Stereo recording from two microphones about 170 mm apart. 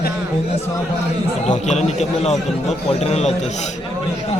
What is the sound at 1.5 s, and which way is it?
A man's voice, 40° left (ahead or behind).